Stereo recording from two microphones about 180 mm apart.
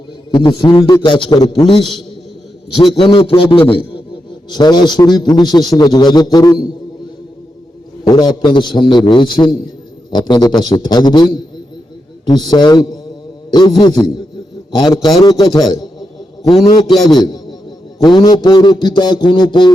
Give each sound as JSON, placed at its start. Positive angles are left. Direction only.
{"t": 0.3, "sound": "a man's voice", "side_deg": 30}
{"t": 3.0, "sound": "a man's voice", "side_deg": 30}
{"t": 8.0, "sound": "a man's voice", "side_deg": 25}
{"t": 12.5, "sound": "a man's voice", "side_deg": 25}
{"t": 15.7, "sound": "a sound", "side_deg": 20}
{"t": 16.9, "sound": "a man's voice", "side_deg": 0}
{"t": 18.0, "sound": "a man's voice", "side_deg": 25}